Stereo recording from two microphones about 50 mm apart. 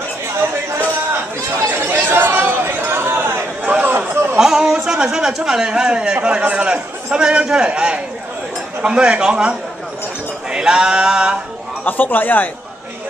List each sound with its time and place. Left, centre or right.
1.9 s chatter: right
3.8 s a sound: right
4.4 s a sound: centre
5.0 s a man's voice: centre
10.5 s male singing: centre
11.8 s speech: left